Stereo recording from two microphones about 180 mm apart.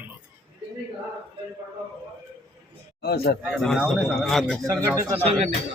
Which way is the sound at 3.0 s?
60° left (ahead or behind).